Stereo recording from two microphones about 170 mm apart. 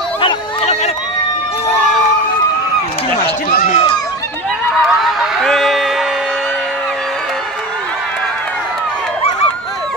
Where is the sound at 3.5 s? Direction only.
50° left (ahead or behind).